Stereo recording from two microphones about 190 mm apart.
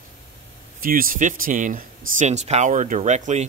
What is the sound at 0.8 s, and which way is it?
A man's voice, 50° right (ahead or behind).